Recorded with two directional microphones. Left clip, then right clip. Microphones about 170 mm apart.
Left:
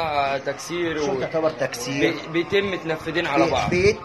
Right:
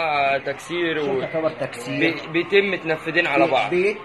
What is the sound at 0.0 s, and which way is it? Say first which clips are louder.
A man's voice: right 2 dB; 30° right (ahead or behind).